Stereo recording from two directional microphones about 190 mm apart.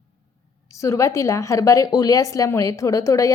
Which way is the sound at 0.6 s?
15° left (ahead or behind).